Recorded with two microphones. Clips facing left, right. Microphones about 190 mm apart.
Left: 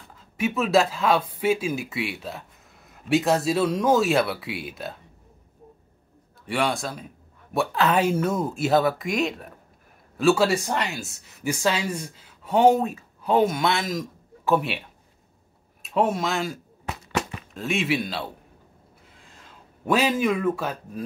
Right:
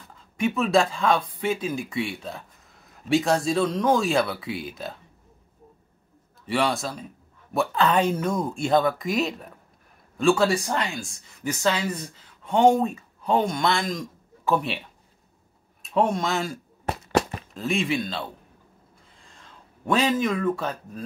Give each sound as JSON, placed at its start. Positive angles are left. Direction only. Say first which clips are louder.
{"t": 0.4, "sound": "speech", "louder": "even", "side_deg": 5}
{"t": 6.4, "sound": "speech", "louder": "right 1 dB", "side_deg": 0}
{"t": 15.8, "sound": "speech", "louder": "even", "side_deg": 5}
{"t": 16.9, "sound": "a sound", "louder": "right 5 dB", "side_deg": -35}
{"t": 17.6, "sound": "speech", "louder": "even", "side_deg": 0}
{"t": 19.9, "sound": "speech", "louder": "left 1 dB", "side_deg": 10}